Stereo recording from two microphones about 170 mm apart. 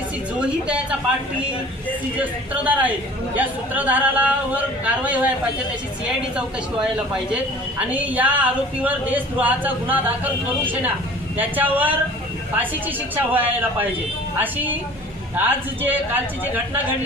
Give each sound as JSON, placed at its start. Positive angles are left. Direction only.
{"t": 0.3, "sound": "speech", "side_deg": -5}
{"t": 2.1, "sound": "speech", "side_deg": -10}
{"t": 7.9, "sound": "speech", "side_deg": -10}
{"t": 11.3, "sound": "speech", "side_deg": -10}
{"t": 13.1, "sound": "speech", "side_deg": -10}